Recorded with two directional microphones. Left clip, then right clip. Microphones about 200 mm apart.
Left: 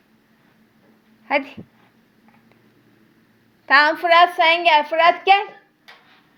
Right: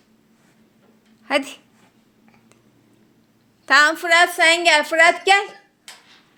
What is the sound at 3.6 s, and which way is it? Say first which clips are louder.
A woman's voice: even; 40° right (ahead or behind).